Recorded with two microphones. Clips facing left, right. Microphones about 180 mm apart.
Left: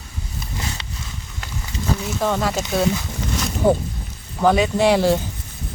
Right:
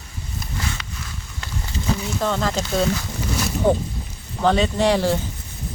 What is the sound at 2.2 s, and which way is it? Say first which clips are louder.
Speech: left 2 dB; 5° left (ahead or behind).